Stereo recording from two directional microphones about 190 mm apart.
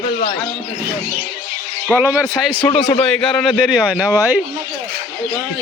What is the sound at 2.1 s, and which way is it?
A man's voice, centre (ahead or behind).